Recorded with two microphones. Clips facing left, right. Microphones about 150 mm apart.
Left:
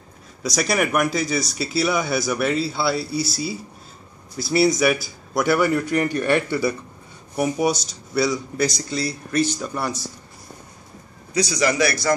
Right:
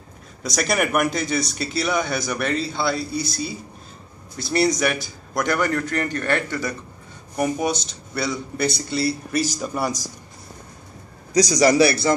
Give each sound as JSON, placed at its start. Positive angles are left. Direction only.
{"t": 0.4, "sound": "a man's voice", "side_deg": 0}
{"t": 11.3, "sound": "speech", "side_deg": -40}